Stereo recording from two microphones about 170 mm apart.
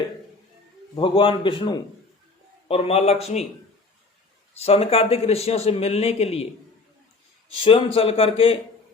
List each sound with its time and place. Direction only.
0.9 s a man's voice: 30° left (ahead or behind)
4.5 s a man's voice: 35° left (ahead or behind)
7.9 s a man's voice: 35° left (ahead or behind)